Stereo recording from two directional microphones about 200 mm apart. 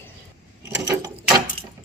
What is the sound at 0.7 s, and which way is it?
Gears, 15° right (ahead or behind).